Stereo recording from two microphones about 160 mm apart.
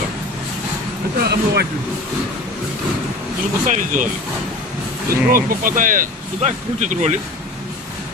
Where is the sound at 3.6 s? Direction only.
55° right (ahead or behind).